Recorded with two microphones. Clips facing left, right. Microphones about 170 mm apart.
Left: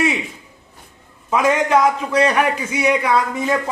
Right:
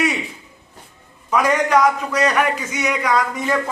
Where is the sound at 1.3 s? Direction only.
25° left (ahead or behind).